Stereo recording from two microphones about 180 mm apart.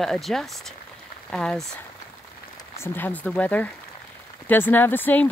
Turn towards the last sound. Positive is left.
turn(degrees=10)  # may be behind; listen again after turning